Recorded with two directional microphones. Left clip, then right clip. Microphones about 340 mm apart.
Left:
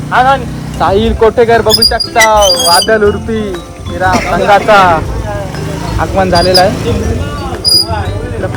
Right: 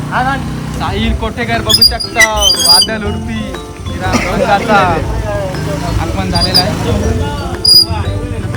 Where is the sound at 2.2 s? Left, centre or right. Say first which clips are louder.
Left 3 dB; left.